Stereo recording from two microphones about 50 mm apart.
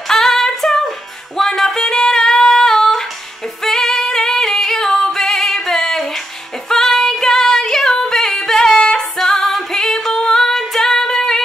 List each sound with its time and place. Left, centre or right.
0.1 s music: centre